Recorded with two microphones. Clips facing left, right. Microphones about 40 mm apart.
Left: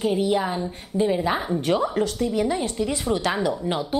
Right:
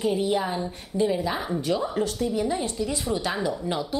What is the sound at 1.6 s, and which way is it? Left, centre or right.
Speech, left.